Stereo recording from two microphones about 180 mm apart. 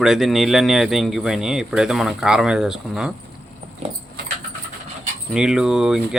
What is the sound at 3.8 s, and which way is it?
Keys jangling, 40° right (ahead or behind).